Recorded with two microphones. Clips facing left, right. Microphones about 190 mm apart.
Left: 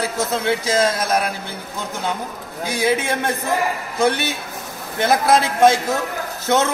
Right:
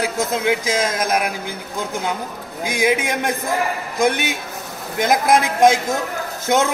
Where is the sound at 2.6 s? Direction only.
15° right (ahead or behind).